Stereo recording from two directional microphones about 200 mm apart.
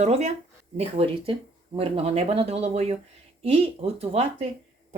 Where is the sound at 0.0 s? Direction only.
35° right (ahead or behind).